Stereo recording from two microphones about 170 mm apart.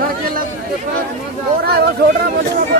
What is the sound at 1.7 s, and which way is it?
Speech, 65° right (ahead or behind).